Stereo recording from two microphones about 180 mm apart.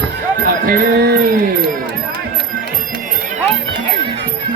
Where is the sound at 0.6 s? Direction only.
55° right (ahead or behind).